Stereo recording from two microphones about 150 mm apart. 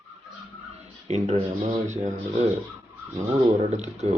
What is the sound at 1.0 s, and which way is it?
Speech, 45° right (ahead or behind).